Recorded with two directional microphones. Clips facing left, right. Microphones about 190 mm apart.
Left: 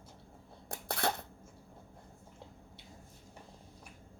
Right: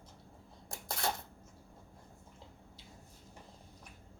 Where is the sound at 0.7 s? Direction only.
60° left (ahead or behind).